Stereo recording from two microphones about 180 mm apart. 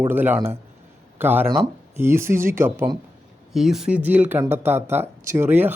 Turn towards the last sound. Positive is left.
turn(degrees=-10)  # may be behind; listen again after turning